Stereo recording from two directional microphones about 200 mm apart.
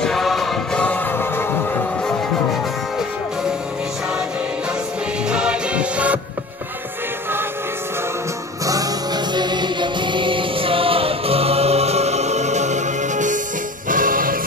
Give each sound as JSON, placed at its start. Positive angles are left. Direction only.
{"t": 0.0, "sound": "music", "side_deg": 0}
{"t": 5.3, "sound": "music", "side_deg": -5}
{"t": 8.6, "sound": "music", "side_deg": -20}